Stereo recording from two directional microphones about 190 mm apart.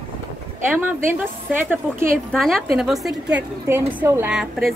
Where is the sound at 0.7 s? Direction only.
10° right (ahead or behind).